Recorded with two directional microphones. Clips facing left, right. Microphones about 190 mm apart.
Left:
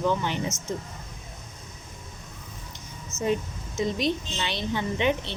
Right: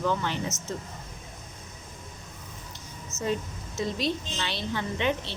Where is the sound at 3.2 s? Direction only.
20° left (ahead or behind).